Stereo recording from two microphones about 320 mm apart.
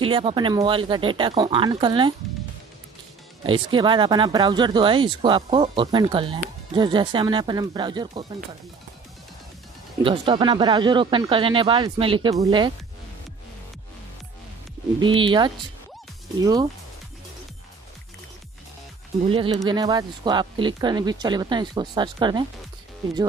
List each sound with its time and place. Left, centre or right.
0.0 s speech: centre
3.4 s speech: centre
10.0 s speech: centre
15.0 s speech: centre
19.2 s speech: centre